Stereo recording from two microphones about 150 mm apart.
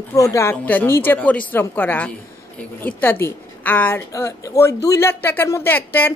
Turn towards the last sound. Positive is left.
turn(degrees=15)  # may be behind; listen again after turning